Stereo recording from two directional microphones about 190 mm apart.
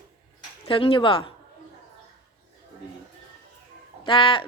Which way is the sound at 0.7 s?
30° left (ahead or behind).